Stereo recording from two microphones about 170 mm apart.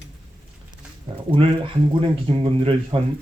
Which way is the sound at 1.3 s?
30° right (ahead or behind).